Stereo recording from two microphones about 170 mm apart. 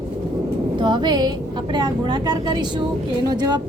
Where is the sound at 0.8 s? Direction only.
25° right (ahead or behind).